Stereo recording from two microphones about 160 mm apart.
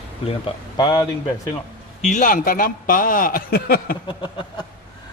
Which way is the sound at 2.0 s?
50° left (ahead or behind).